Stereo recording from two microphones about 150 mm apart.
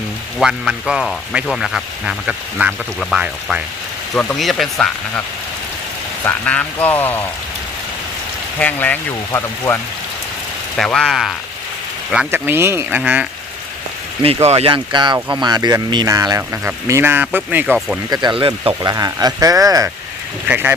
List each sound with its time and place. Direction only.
0.3 s speech: centre (ahead or behind)
6.2 s speech: 10° left (ahead or behind)
8.5 s speech: 10° left (ahead or behind)
10.8 s speech: 5° left (ahead or behind)
12.1 s speech: 10° right (ahead or behind)
14.2 s speech: 40° right (ahead or behind); by 17.7 s 10° right (ahead or behind)
17.7 s speech: centre (ahead or behind)
18.1 s speech: 30° right (ahead or behind)
20.5 s speech: 15° right (ahead or behind)